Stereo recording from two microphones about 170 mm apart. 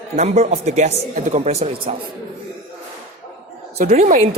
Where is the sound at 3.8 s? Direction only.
45° right (ahead or behind).